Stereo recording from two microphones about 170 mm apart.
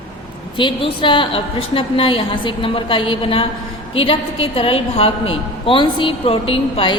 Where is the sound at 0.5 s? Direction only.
30° left (ahead or behind).